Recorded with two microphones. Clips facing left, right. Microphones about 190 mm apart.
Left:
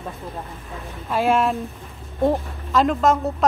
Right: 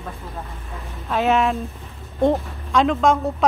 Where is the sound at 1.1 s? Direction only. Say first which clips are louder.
Even; 5° left (ahead or behind).